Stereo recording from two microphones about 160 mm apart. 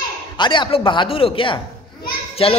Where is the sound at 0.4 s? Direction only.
30° left (ahead or behind).